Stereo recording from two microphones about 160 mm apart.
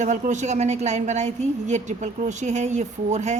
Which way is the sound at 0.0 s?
50° right (ahead or behind).